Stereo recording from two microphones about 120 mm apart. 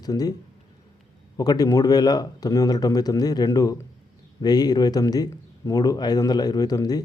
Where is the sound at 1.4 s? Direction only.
30° left (ahead or behind).